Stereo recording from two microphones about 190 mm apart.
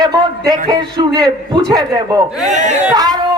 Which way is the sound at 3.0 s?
20° right (ahead or behind).